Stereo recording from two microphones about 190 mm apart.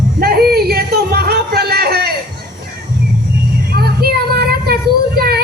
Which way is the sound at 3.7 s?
55° right (ahead or behind).